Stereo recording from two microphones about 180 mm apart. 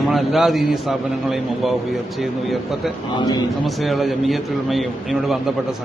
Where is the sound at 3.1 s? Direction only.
25° left (ahead or behind).